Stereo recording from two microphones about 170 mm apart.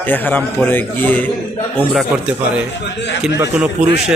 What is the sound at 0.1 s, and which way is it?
A man's voice, 10° left (ahead or behind).